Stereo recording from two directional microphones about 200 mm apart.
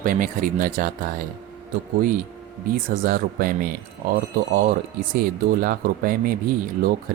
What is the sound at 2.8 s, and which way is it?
Speech, 45° right (ahead or behind).